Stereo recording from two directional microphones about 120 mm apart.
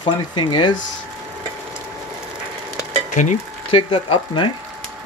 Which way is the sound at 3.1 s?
90° left.